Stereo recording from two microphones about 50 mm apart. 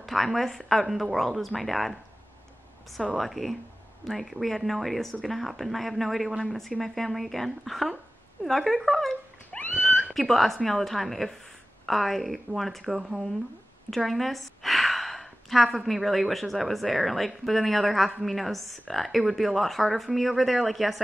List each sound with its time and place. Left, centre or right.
0.0 s a woman's voice: centre
3.2 s a woman's voice: centre
9.5 s a sound: left
10.1 s a woman's voice: centre